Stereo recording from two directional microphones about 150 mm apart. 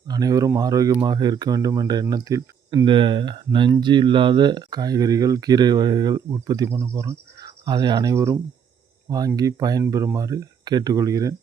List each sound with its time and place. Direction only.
0.1 s speech: 25° right (ahead or behind)